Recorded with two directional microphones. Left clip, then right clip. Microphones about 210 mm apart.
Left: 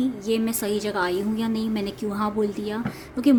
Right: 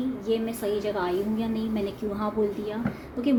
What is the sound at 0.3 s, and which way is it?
A woman's voice, 45° left (ahead or behind).